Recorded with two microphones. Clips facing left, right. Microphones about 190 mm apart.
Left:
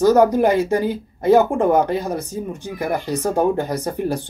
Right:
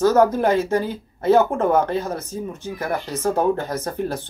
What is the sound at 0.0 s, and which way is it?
Speech, 15° left (ahead or behind).